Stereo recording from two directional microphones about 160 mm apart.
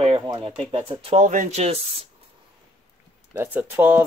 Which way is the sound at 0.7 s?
35° right (ahead or behind).